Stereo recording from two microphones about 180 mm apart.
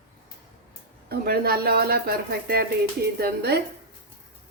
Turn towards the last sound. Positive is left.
turn(degrees=-60)  # may be behind; listen again after turning